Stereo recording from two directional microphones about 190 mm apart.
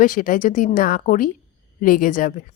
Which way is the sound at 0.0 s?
45° left (ahead or behind).